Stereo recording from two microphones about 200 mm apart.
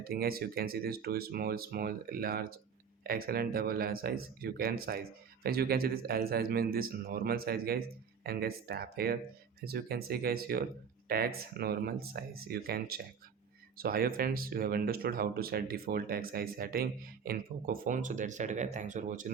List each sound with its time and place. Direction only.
0.0 s speech: 50° right (ahead or behind)